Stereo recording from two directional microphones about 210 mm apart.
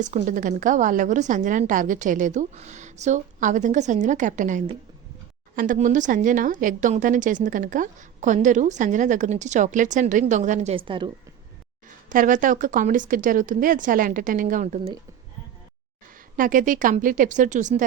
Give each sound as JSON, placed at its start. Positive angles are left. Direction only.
{"t": 0.0, "sound": "a woman's voice", "side_deg": -40}
{"t": 12.0, "sound": "a woman's voice", "side_deg": -40}
{"t": 16.4, "sound": "a woman's voice", "side_deg": -40}